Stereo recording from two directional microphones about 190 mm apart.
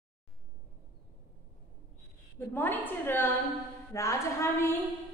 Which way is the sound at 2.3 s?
10° left (ahead or behind).